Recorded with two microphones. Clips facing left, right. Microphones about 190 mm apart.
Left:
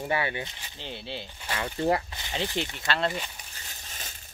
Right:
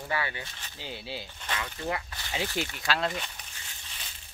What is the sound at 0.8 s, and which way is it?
Speech, 5° right (ahead or behind).